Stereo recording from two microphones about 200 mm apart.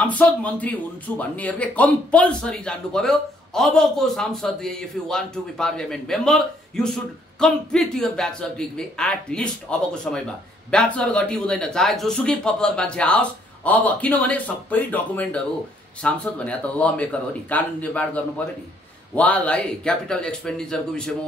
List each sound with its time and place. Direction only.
0.1 s a man's voice: 5° left (ahead or behind)